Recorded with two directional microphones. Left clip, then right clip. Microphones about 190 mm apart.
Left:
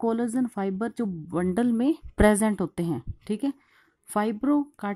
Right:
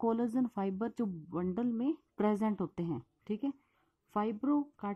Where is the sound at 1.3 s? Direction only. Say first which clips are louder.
Left 12 dB; 20° left (ahead or behind).